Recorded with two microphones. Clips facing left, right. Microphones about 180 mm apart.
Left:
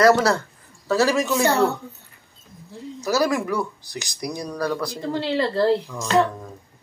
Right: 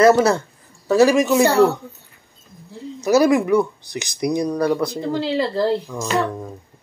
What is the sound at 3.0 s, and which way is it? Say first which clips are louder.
Speech: right 7 dB; 20° right (ahead or behind).